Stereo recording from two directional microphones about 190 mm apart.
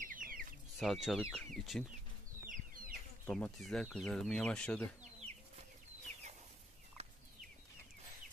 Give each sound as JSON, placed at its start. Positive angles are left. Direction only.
{"t": 0.0, "sound": "chicken", "side_deg": -45}
{"t": 0.7, "sound": "speech", "side_deg": 0}
{"t": 2.5, "sound": "a sound", "side_deg": -45}
{"t": 3.3, "sound": "speech", "side_deg": 5}